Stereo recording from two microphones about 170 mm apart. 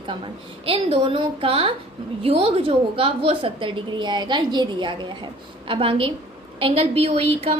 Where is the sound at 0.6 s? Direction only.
30° right (ahead or behind).